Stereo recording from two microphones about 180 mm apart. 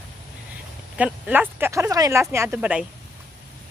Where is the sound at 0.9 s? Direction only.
10° right (ahead or behind).